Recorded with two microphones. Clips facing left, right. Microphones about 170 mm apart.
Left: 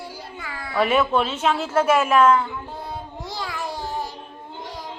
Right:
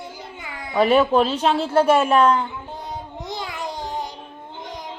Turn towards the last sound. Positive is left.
turn(degrees=-20)  # may be behind; listen again after turning